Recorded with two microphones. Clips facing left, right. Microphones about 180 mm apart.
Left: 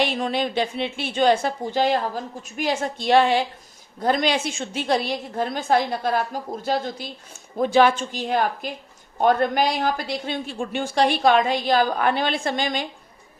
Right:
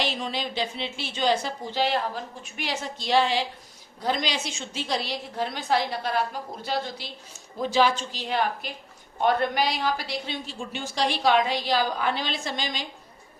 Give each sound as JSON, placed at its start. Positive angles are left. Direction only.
{"t": 0.0, "sound": "a woman's voice", "side_deg": 55}